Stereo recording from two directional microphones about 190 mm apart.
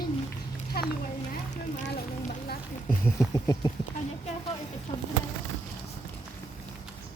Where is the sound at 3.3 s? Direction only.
20° left (ahead or behind).